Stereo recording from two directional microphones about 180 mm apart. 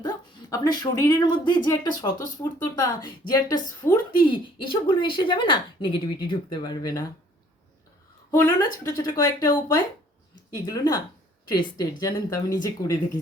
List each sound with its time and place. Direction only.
0.0 s speech: 20° left (ahead or behind)
8.4 s speech: 15° left (ahead or behind)